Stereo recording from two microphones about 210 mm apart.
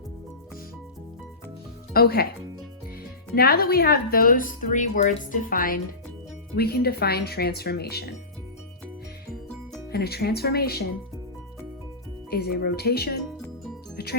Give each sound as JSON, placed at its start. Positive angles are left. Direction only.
{"t": 1.9, "sound": "speech", "side_deg": 45}
{"t": 3.3, "sound": "speech", "side_deg": 45}
{"t": 9.9, "sound": "speech", "side_deg": 50}
{"t": 12.3, "sound": "speech", "side_deg": 50}
{"t": 13.9, "sound": "music", "side_deg": 50}